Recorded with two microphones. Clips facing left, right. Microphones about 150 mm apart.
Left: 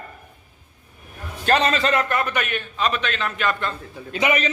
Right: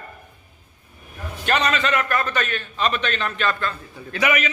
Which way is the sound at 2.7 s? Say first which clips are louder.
Right 1 dB; 5° left (ahead or behind).